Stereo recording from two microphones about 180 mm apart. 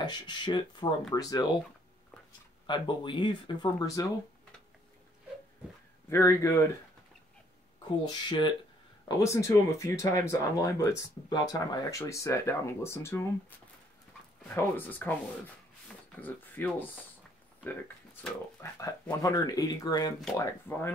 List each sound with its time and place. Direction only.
0.0 s speech: 25° left (ahead or behind)
2.6 s speech: 25° left (ahead or behind)
6.0 s speech: 15° left (ahead or behind)
8.0 s speech: 25° left (ahead or behind)
14.5 s speech: 10° left (ahead or behind)
18.2 s speech: 15° left (ahead or behind)